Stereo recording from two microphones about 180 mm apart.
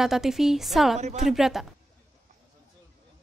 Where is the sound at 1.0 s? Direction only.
40° right (ahead or behind).